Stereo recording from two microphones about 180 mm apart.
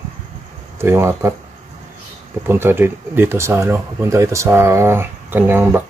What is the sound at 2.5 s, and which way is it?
Speech, 10° right (ahead or behind).